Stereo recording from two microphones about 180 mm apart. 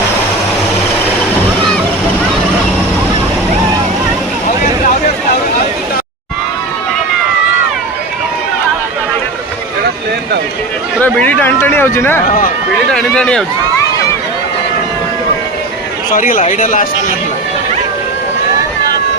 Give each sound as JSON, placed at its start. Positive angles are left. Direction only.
{"t": 11.0, "sound": "a sound", "side_deg": 10}
{"t": 12.9, "sound": "a man's voice", "side_deg": 5}
{"t": 16.1, "sound": "speech", "side_deg": 50}